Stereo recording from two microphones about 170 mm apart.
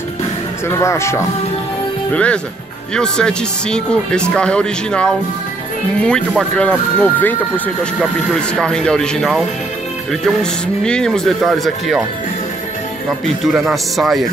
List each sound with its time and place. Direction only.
0.7 s speech: 15° left (ahead or behind); by 12.0 s centre (ahead or behind)
13.2 s speech: centre (ahead or behind)